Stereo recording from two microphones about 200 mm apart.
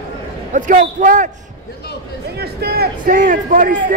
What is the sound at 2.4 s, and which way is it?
A man's voice, 50° right (ahead or behind).